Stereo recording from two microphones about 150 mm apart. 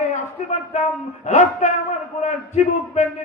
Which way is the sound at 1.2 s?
50° left (ahead or behind).